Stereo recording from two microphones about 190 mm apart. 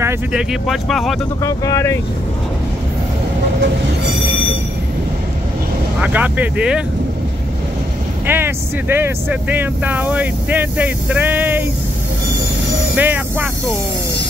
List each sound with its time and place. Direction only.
0.0 s speech: 5° right (ahead or behind)
1.4 s speech: 15° left (ahead or behind)
5.9 s speech: 10° right (ahead or behind)
8.3 s speech: 10° right (ahead or behind)
12.9 s speech: 10° right (ahead or behind)